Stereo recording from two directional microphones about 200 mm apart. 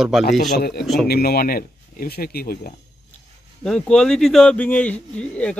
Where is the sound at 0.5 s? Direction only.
50° left (ahead or behind).